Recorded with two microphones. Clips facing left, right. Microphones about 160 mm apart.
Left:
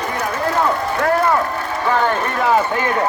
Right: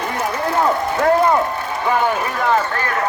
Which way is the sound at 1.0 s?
20° right (ahead or behind).